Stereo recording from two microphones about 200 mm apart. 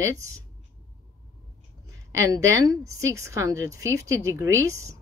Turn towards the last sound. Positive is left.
turn(degrees=-15)  # may be behind; listen again after turning